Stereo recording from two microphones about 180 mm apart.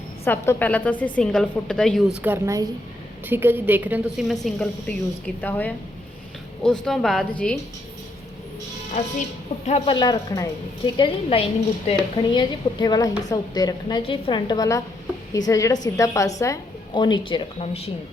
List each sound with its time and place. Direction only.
0.3 s a woman's voice: 10° left (ahead or behind)
2.2 s a woman's voice: 15° right (ahead or behind); by 7.6 s 5° left (ahead or behind)
8.9 s a woman's voice: 40° left (ahead or behind)